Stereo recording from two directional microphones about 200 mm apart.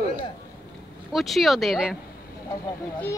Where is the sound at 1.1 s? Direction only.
Centre (ahead or behind).